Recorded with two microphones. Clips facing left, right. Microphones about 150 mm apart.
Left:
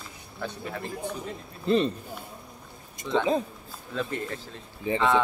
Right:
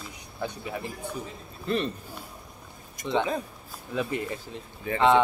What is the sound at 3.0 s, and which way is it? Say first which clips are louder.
Speech: right 3 dB; 20° left (ahead or behind).